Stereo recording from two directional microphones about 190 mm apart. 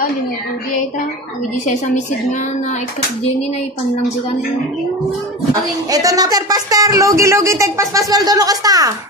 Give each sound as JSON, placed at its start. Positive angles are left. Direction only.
{"t": 5.5, "sound": "a man's voice", "side_deg": -20}